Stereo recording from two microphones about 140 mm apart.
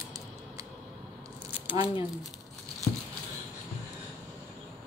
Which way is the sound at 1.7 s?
40° left (ahead or behind).